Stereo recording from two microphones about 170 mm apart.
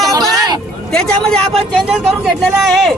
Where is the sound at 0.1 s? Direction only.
20° right (ahead or behind).